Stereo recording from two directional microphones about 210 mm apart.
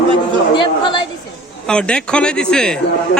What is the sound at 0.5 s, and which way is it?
Speech, 25° left (ahead or behind).